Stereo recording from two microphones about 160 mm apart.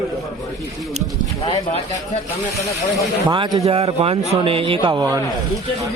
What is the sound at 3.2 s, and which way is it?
Speech, 25° right (ahead or behind).